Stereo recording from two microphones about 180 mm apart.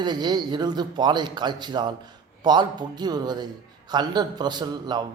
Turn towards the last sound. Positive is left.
turn(degrees=-25)  # may be behind; listen again after turning